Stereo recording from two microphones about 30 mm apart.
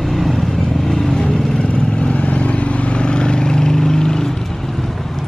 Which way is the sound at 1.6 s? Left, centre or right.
Left.